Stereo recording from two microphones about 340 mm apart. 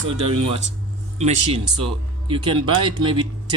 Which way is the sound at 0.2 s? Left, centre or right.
Centre.